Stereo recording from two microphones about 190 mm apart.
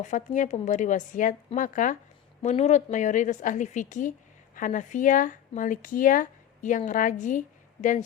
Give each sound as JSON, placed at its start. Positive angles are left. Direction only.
{"t": 0.0, "sound": "a woman's voice", "side_deg": 40}